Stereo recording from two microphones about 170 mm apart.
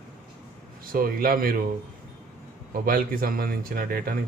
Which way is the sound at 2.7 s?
55° right (ahead or behind).